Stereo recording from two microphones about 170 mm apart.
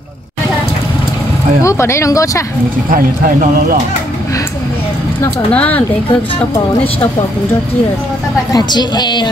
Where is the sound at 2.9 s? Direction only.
50° right (ahead or behind).